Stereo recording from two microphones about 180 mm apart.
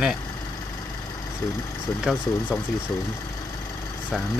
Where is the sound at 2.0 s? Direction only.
Centre (ahead or behind).